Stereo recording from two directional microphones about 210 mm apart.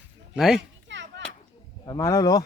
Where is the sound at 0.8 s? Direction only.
60° right (ahead or behind).